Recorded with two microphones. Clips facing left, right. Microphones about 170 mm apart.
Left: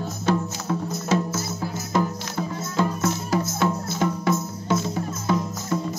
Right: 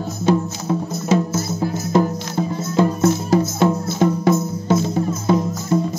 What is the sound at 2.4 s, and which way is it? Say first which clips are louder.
Music: right 7 dB; 25° right (ahead or behind).